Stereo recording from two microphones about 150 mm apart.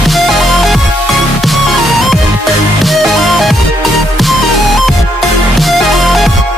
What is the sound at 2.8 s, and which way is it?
Music, centre (ahead or behind).